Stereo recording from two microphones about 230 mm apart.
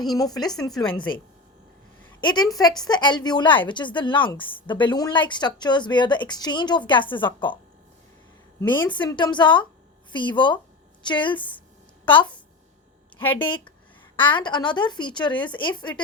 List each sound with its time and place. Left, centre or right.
0.0 s a woman's voice: centre
2.2 s a woman's voice: centre
8.6 s a woman's voice: left
14.2 s a woman's voice: centre